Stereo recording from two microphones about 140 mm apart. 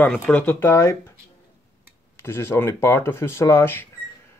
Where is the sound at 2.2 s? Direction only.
20° left (ahead or behind).